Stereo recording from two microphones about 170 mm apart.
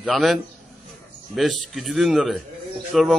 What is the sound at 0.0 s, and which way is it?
A man's voice, centre (ahead or behind).